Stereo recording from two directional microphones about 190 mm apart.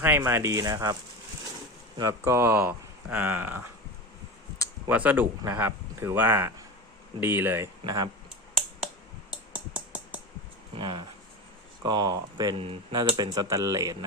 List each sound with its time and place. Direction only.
0.2 s speech: 15° right (ahead or behind)
2.0 s speech: 15° right (ahead or behind)
4.9 s speech: 10° right (ahead or behind)
9.7 s a sound: 5° right (ahead or behind)
10.8 s speech: 25° right (ahead or behind)